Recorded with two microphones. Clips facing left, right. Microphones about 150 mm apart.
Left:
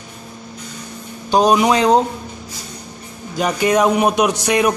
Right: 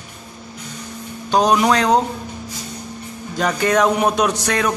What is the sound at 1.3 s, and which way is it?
Speech, 10° left (ahead or behind).